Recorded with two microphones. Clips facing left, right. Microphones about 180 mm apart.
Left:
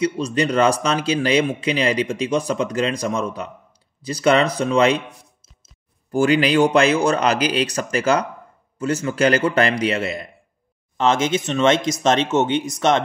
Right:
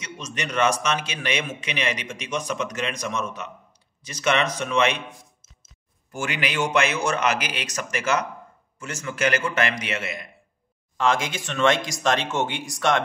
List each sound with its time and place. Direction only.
0.0 s speech: 35° left (ahead or behind)
6.1 s speech: 35° left (ahead or behind)
11.0 s speech: 25° left (ahead or behind)